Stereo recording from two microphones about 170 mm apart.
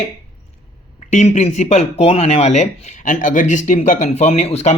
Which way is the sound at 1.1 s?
45° left (ahead or behind).